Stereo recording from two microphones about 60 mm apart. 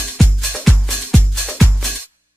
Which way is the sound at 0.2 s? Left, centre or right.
Centre.